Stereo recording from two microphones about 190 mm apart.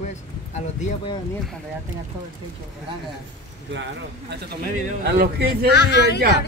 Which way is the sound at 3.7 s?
70° right (ahead or behind).